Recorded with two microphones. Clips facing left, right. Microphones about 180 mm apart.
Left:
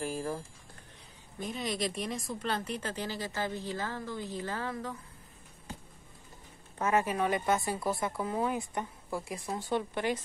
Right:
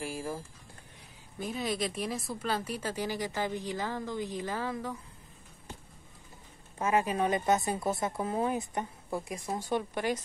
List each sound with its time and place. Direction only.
0.0 s music: 10° right (ahead or behind)
1.4 s speech: 5° right (ahead or behind)
6.8 s speech: 15° right (ahead or behind)